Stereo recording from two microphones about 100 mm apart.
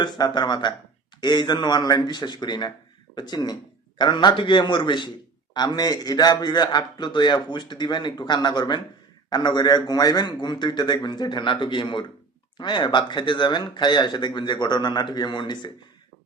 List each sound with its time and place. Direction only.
0.0 s a man's voice: 50° left (ahead or behind)